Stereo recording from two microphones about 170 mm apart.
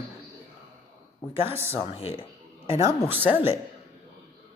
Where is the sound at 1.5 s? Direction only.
15° right (ahead or behind).